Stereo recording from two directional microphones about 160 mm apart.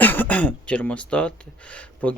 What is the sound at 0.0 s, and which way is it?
Speech, 10° left (ahead or behind).